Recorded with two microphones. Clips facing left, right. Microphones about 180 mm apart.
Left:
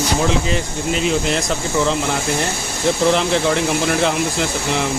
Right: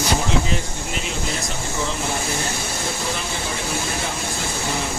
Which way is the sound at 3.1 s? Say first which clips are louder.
Left 11 dB; 80° left.